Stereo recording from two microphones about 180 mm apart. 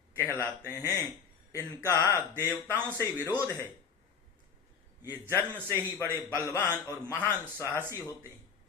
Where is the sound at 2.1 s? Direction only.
10° right (ahead or behind).